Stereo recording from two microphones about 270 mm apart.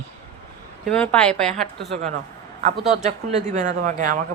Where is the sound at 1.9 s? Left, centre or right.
Right.